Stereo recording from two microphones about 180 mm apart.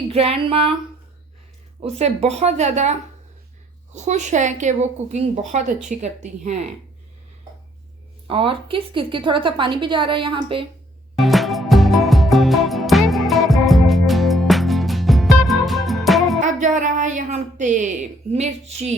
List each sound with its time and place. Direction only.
0.1 s a woman's voice: 35° right (ahead or behind)
1.8 s a woman's voice: 35° right (ahead or behind)
8.3 s a woman's voice: 30° right (ahead or behind)
11.2 s music: centre (ahead or behind)
16.4 s a woman's voice: 45° right (ahead or behind)